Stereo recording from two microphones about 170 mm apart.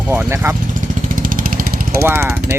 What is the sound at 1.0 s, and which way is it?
Vehicle, 55° right (ahead or behind).